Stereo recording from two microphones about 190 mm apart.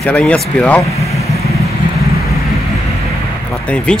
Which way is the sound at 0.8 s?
35° left (ahead or behind).